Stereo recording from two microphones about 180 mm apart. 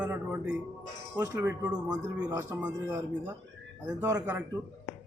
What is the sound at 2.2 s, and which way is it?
A man's voice, 20° right (ahead or behind).